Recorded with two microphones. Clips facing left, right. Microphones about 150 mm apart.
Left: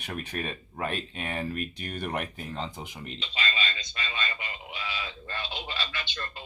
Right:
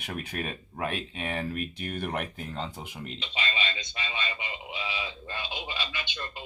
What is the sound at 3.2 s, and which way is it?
A man's voice, 20° right (ahead or behind).